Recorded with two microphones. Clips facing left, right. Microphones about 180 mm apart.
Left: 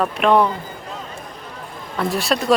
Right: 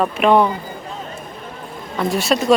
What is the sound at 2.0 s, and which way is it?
Speech, centre (ahead or behind).